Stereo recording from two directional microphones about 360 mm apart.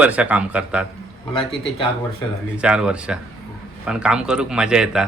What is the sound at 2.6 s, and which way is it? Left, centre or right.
A man's voice, centre.